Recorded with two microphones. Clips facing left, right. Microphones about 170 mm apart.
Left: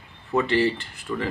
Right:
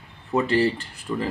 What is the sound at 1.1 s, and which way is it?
Speech, 20° right (ahead or behind).